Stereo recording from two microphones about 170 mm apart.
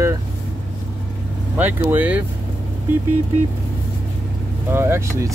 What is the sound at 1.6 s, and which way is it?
Speech, 10° right (ahead or behind).